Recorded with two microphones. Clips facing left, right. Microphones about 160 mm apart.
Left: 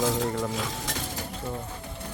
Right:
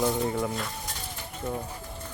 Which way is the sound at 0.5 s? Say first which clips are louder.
Left 3 dB; 90° left.